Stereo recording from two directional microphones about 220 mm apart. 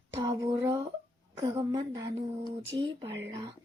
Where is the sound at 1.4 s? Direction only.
20° right (ahead or behind).